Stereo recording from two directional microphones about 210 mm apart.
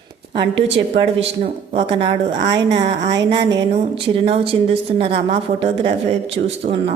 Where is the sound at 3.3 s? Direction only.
20° right (ahead or behind).